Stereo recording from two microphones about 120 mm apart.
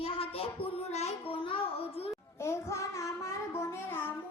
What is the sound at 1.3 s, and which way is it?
Speech, 50° left (ahead or behind).